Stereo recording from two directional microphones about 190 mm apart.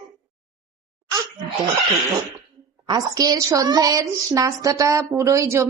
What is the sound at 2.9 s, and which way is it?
A woman's voice, 20° right (ahead or behind).